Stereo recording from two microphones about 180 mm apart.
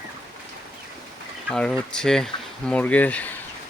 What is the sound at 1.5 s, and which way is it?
Speech, 5° left (ahead or behind).